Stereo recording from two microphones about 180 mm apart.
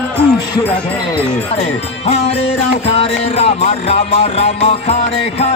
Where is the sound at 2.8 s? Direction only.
35° left (ahead or behind).